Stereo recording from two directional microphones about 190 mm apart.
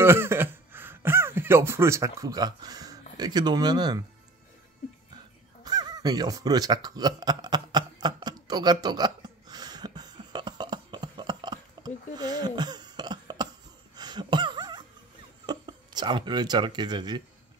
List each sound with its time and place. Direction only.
0.0 s speech: 10° right (ahead or behind)
5.6 s a sound: 20° right (ahead or behind)
15.4 s speech: 25° right (ahead or behind)